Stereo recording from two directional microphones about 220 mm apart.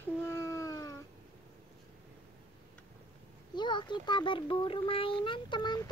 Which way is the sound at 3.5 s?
20° left (ahead or behind).